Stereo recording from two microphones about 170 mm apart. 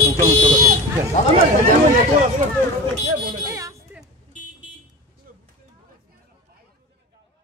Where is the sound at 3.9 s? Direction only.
10° right (ahead or behind).